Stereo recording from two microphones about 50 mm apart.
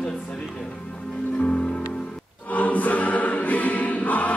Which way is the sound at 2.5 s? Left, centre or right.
Left.